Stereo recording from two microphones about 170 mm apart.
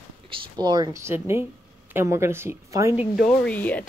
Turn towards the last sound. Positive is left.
turn(degrees=10)  # may be behind; listen again after turning